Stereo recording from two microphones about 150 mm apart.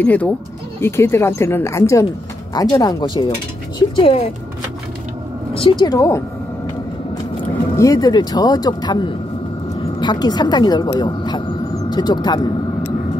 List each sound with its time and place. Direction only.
0.0 s a woman's voice: 10° left (ahead or behind); by 4.2 s 40° left (ahead or behind)
5.6 s a woman's voice: 35° left (ahead or behind)
5.9 s speech: 20° left (ahead or behind)
7.4 s speech: 20° left (ahead or behind)
9.8 s a sound: 30° left (ahead or behind)